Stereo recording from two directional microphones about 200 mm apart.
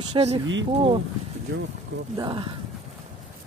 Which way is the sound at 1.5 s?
55° right (ahead or behind).